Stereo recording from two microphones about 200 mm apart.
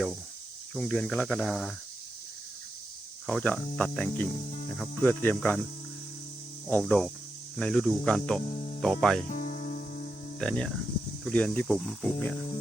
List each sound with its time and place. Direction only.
0.7 s speech: 5° left (ahead or behind)
3.2 s speech: 5° left (ahead or behind)
6.7 s speech: 5° left (ahead or behind)
9.3 s music: 40° left (ahead or behind)
10.4 s speech: 5° left (ahead or behind)